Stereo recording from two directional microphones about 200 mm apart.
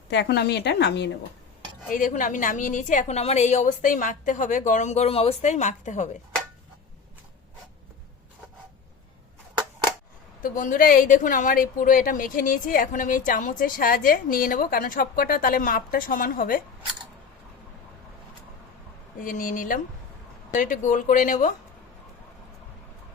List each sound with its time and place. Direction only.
0.1 s speech: 55° left (ahead or behind)
2.0 s a woman's voice: 40° left (ahead or behind)
10.4 s speech: 40° left (ahead or behind)
19.2 s a woman's voice: 45° left (ahead or behind)